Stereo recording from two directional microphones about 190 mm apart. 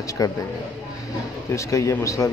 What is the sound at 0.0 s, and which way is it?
Speech, 15° left (ahead or behind).